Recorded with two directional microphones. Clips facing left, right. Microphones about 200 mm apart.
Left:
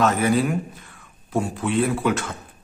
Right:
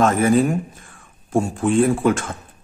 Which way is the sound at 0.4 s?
45° right (ahead or behind).